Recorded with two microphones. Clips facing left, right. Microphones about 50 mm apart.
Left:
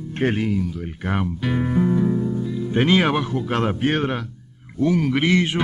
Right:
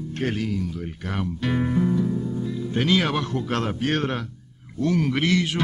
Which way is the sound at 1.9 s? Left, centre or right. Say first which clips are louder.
Left 4 dB; left.